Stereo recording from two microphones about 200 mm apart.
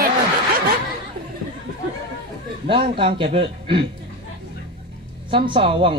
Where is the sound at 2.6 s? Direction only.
25° right (ahead or behind).